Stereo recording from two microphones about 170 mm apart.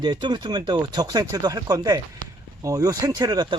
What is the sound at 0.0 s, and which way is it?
Speech, 25° right (ahead or behind).